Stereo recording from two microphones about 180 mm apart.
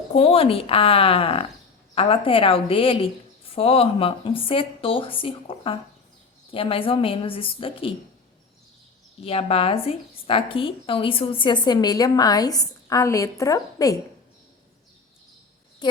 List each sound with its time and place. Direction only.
0.1 s a woman's voice: 35° left (ahead or behind)
9.2 s a woman's voice: 30° left (ahead or behind)